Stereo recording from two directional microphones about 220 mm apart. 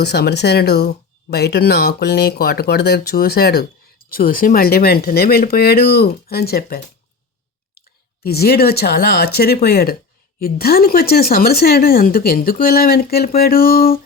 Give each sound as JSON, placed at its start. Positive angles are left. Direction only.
{"t": 0.0, "sound": "speech", "side_deg": 50}
{"t": 8.2, "sound": "speech", "side_deg": 45}